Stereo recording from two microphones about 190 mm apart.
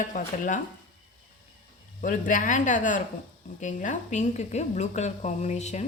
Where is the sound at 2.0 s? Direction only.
45° left (ahead or behind).